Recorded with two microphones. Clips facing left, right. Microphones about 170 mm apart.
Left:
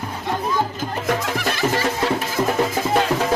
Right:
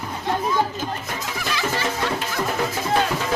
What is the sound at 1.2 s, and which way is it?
Music, 60° left (ahead or behind).